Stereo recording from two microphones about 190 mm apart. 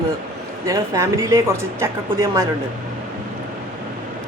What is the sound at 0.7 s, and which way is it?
Speech, 15° right (ahead or behind).